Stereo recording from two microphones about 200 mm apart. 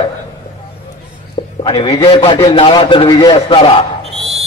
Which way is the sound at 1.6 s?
30° left (ahead or behind).